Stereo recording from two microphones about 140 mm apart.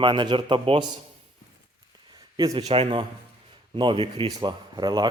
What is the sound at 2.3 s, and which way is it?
Speech, 30° right (ahead or behind).